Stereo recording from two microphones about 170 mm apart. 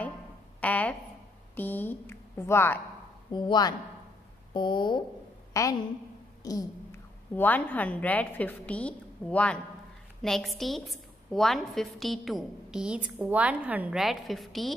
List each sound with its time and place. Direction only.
0.6 s a sound: 10° left (ahead or behind)
1.5 s a woman's voice: 10° left (ahead or behind)
3.3 s a woman's voice: 25° left (ahead or behind); by 14.7 s centre (ahead or behind)